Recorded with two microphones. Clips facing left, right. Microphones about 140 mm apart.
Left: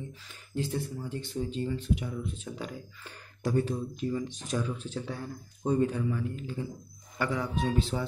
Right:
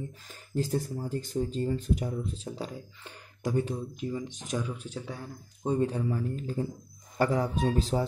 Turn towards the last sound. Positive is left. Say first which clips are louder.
# right 2 dB
turn(degrees=-40)  # may be behind; listen again after turning